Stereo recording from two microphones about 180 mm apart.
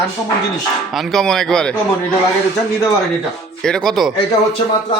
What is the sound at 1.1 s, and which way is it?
Speech, centre (ahead or behind).